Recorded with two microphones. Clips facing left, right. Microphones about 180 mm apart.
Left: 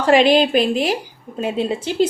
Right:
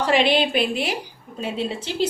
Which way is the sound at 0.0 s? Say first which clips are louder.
Left 6 dB; 45° left (ahead or behind).